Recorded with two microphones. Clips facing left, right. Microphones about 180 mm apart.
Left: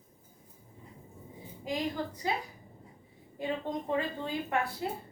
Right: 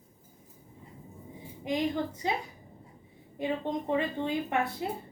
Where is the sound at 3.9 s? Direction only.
20° right (ahead or behind).